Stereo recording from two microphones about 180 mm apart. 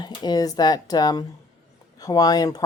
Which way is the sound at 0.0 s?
25° left (ahead or behind).